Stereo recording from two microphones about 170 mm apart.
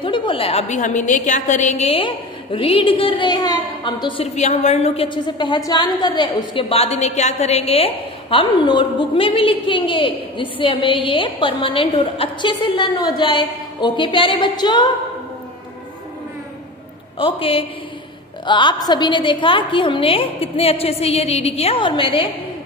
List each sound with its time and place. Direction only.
0.0 s a woman's voice: 30° left (ahead or behind)
4.4 s a woman's voice: 40° left (ahead or behind); by 14.9 s 25° left (ahead or behind)
17.2 s a woman's voice: 30° left (ahead or behind)